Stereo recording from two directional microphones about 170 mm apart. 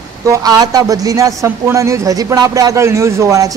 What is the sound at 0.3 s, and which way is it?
A man's voice, 20° right (ahead or behind).